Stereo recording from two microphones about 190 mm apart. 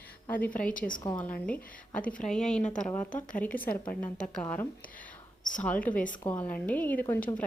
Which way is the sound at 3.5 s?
50° left (ahead or behind).